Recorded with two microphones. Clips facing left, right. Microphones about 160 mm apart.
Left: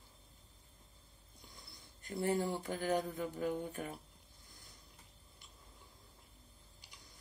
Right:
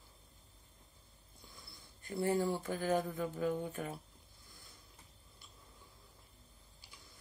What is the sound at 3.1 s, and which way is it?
Music, 45° right (ahead or behind).